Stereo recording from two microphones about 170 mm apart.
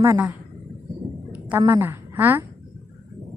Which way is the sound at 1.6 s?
15° right (ahead or behind).